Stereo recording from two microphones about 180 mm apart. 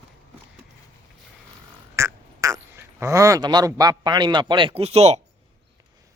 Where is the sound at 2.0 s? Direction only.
15° right (ahead or behind).